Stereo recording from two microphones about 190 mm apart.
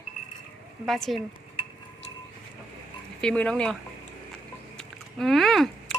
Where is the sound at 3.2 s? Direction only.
5° left (ahead or behind).